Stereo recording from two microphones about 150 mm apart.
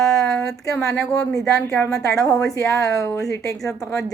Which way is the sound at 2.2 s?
25° left (ahead or behind).